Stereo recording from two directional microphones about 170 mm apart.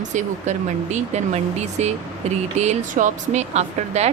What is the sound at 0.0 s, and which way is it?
Speech, 45° right (ahead or behind).